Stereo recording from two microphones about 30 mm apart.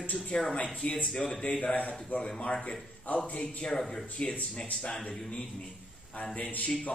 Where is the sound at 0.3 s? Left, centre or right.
Left.